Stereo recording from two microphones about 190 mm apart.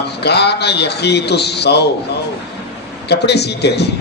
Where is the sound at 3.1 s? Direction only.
60° left (ahead or behind).